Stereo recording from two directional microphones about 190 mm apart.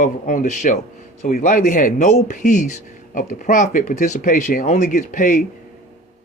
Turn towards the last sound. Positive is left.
turn(degrees=45)  # may be behind; listen again after turning